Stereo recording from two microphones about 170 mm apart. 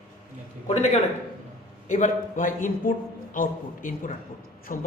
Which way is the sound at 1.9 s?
50° left (ahead or behind).